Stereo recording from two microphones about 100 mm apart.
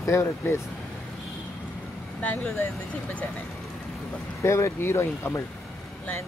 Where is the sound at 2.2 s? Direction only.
15° left (ahead or behind).